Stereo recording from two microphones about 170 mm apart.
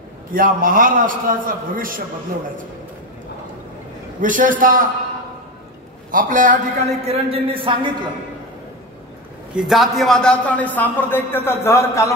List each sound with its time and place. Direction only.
0.3 s a man's voice: 55° right (ahead or behind)
4.2 s a man's voice: 50° right (ahead or behind)
6.1 s a man's voice: 50° right (ahead or behind); by 8.1 s 30° right (ahead or behind)
9.6 s a man's voice: centre (ahead or behind); by 12.1 s 15° left (ahead or behind)